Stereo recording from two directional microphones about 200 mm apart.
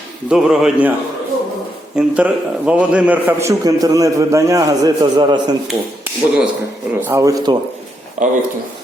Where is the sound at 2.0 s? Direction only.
5° right (ahead or behind).